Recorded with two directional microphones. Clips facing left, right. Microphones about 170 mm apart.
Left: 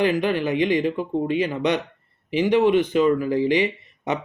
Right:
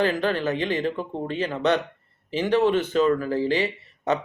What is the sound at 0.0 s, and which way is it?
Speech, 15° left (ahead or behind).